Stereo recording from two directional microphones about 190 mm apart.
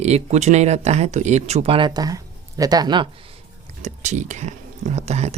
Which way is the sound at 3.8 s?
40° right (ahead or behind).